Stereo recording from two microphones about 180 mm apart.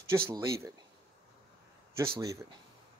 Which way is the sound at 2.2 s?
20° right (ahead or behind).